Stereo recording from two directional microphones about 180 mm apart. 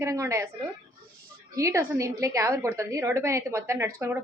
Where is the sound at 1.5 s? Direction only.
15° right (ahead or behind).